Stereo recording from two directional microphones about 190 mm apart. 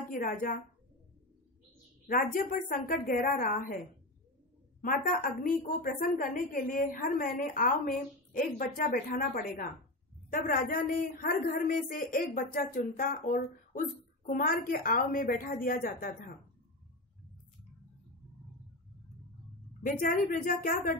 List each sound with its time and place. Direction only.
0.1 s a woman's voice: 45° left (ahead or behind)
2.0 s a woman's voice: 45° left (ahead or behind)
4.8 s a woman's voice: 45° left (ahead or behind)
19.8 s a woman's voice: 45° left (ahead or behind)